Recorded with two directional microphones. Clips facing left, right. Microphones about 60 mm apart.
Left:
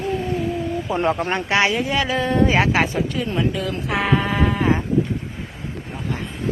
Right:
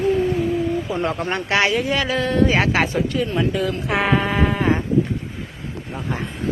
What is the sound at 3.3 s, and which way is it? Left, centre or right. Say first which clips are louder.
Speech: right 2 dB; centre.